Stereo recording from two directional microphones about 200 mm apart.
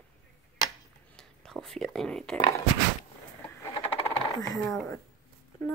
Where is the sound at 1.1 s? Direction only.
Centre (ahead or behind).